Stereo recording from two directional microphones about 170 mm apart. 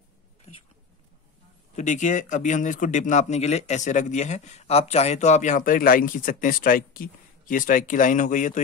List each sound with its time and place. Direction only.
0.5 s whispering: 35° left (ahead or behind)
1.8 s speech: 45° left (ahead or behind)